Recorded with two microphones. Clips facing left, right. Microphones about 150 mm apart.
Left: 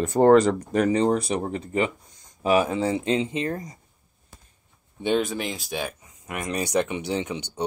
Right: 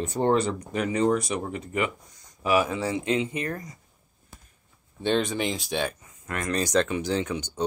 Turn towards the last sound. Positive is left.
turn(degrees=20)  # may be behind; listen again after turning